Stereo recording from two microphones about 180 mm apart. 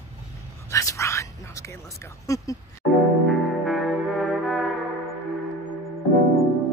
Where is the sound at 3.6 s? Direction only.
Centre (ahead or behind).